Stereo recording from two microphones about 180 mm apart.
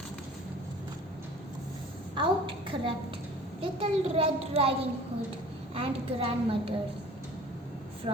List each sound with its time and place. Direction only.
2.1 s a sound: 30° right (ahead or behind)
3.6 s a child's voice: 30° right (ahead or behind)
5.7 s a child's voice: 30° right (ahead or behind)
8.1 s speech: 30° right (ahead or behind)